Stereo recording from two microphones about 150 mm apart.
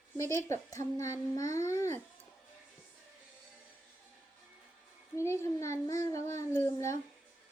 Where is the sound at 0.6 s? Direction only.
20° left (ahead or behind).